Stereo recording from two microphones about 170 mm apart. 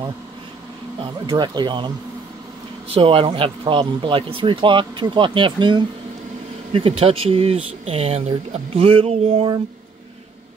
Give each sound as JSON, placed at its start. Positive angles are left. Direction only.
{"t": 0.9, "sound": "speech", "side_deg": -25}
{"t": 2.9, "sound": "speech", "side_deg": -35}